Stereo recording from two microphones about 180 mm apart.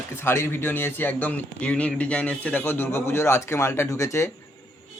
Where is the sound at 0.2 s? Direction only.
15° left (ahead or behind).